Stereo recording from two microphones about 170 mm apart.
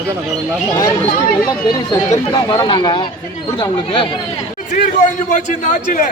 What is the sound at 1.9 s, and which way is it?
Speech, 20° left (ahead or behind).